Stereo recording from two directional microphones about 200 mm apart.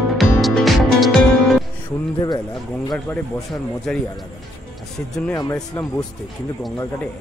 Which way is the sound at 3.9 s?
5° left (ahead or behind).